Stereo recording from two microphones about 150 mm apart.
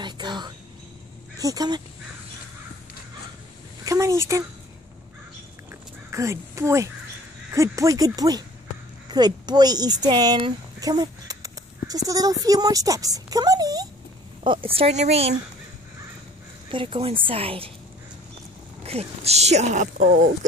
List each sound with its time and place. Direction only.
0.0 s a sound: 30° right (ahead or behind)
1.4 s speech: 25° right (ahead or behind)
3.8 s speech: 20° right (ahead or behind)
5.7 s a sound: 20° right (ahead or behind)
7.5 s speech: 20° right (ahead or behind); by 15.2 s 45° right (ahead or behind)
16.7 s speech: 40° right (ahead or behind)
18.8 s speech: 45° right (ahead or behind)